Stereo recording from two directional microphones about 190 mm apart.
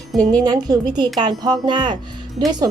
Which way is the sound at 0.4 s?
20° right (ahead or behind).